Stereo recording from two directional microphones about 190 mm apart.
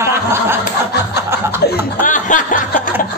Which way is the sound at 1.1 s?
15° right (ahead or behind).